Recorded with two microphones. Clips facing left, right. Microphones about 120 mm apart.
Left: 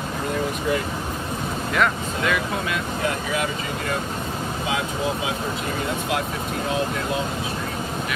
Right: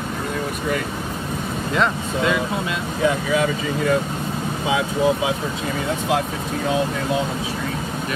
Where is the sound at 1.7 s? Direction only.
25° right (ahead or behind).